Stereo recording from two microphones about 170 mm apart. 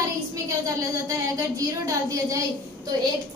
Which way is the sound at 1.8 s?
20° right (ahead or behind).